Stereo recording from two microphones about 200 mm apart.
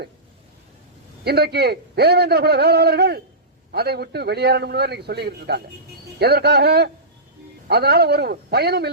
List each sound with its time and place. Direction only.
1.2 s a man's voice: 55° right (ahead or behind)